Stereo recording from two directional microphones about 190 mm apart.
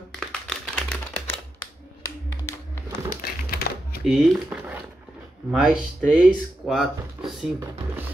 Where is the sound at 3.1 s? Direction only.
55° left (ahead or behind).